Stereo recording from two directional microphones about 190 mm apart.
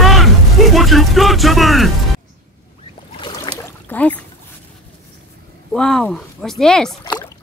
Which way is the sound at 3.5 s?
25° left (ahead or behind).